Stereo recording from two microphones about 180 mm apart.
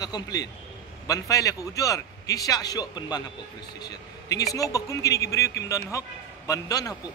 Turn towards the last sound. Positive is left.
turn(degrees=20)  # may be behind; listen again after turning